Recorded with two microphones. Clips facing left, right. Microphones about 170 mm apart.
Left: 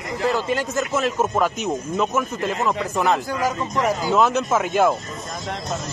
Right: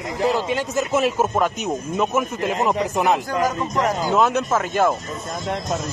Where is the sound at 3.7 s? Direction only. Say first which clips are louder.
Even; centre (ahead or behind).